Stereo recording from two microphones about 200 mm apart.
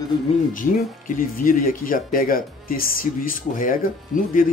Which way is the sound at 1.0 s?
45° left (ahead or behind).